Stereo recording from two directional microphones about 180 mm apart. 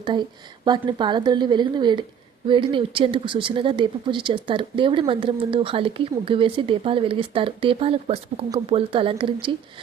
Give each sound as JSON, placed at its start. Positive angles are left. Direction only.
{"t": 0.0, "sound": "speech", "side_deg": -25}